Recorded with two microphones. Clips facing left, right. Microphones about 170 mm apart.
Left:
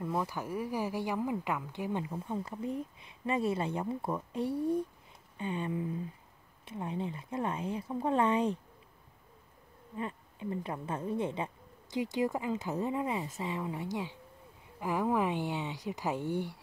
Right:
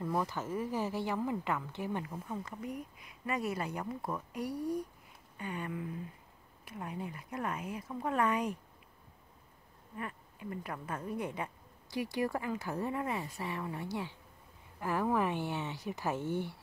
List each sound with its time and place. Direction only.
0.0 s a woman's voice: 5° left (ahead or behind); by 8.5 s 25° left (ahead or behind)
9.9 s a woman's voice: 25° left (ahead or behind)